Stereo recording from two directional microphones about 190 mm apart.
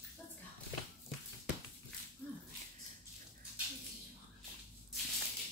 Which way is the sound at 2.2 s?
10° left (ahead or behind).